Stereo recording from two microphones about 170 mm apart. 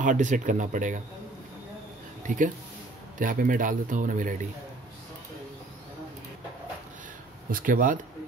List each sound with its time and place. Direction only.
0.0 s speech: 50° right (ahead or behind)
2.2 s speech: 50° right (ahead or behind)
7.5 s speech: 50° right (ahead or behind)